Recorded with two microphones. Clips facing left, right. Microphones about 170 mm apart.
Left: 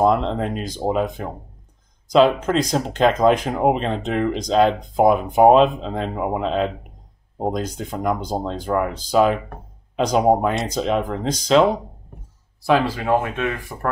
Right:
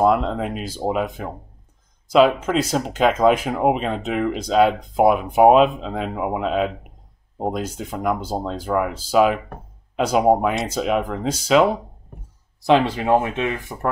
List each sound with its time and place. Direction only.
0.0 s speech: 5° right (ahead or behind)
13.0 s speech: 20° right (ahead or behind)